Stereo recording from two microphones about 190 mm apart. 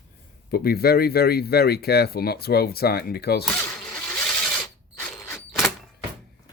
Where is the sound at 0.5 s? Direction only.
55° left (ahead or behind).